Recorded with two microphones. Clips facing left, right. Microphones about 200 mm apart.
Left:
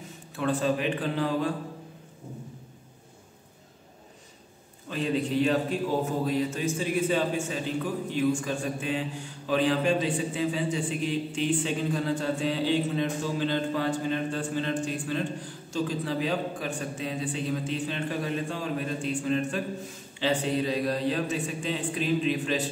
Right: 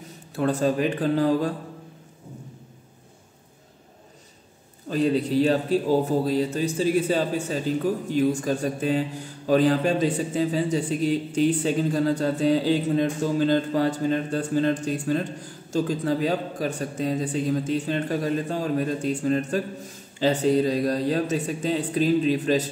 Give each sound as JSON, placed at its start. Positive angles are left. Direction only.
{"t": 0.4, "sound": "a man's voice", "side_deg": -40}
{"t": 4.8, "sound": "a man's voice", "side_deg": -40}